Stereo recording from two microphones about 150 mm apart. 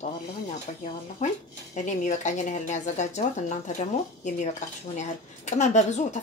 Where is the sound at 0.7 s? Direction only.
50° left (ahead or behind).